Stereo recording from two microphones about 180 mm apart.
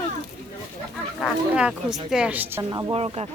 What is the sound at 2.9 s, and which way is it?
Speech, 35° right (ahead or behind).